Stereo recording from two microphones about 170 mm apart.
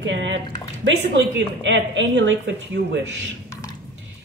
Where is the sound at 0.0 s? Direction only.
90° right.